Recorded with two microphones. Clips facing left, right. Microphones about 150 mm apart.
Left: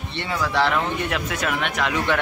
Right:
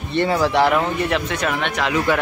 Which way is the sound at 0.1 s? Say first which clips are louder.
Right 10 dB; 45° right (ahead or behind).